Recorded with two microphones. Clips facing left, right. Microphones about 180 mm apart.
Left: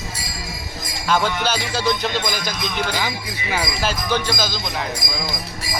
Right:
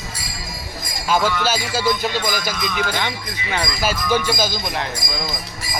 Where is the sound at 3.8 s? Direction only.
10° right (ahead or behind).